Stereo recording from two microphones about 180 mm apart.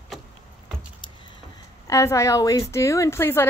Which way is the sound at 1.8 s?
15° left (ahead or behind).